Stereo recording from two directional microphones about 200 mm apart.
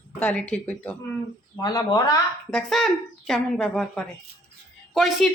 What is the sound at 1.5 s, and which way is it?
Speech, 20° left (ahead or behind).